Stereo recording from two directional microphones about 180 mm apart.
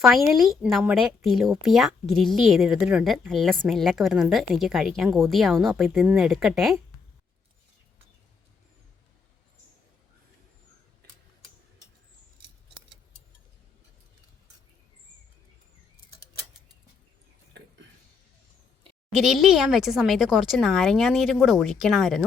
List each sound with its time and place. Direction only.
0.1 s speech: centre (ahead or behind)
5.8 s speech: 10° right (ahead or behind)
17.5 s a sound: 75° right (ahead or behind)
19.1 s speech: centre (ahead or behind)